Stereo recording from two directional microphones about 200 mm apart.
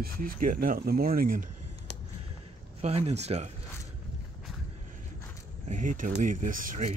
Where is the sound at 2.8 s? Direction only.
30° right (ahead or behind).